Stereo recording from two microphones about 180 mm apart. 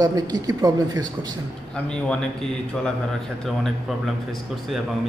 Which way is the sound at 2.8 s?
Centre (ahead or behind).